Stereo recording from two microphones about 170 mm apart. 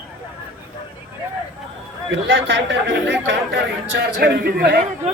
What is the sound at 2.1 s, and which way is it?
Speech, 90° right.